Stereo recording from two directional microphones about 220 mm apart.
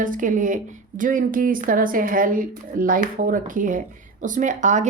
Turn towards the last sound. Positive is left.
turn(degrees=-35)  # may be behind; listen again after turning